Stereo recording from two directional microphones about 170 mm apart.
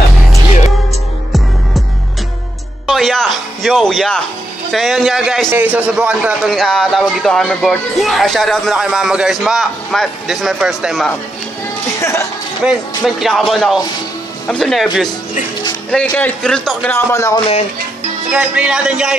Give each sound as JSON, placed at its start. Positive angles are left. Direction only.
{"t": 2.9, "sound": "a man's voice", "side_deg": 0}
{"t": 12.0, "sound": "speech", "side_deg": 15}
{"t": 12.6, "sound": "a man's voice", "side_deg": 0}
{"t": 18.3, "sound": "a man's voice", "side_deg": -5}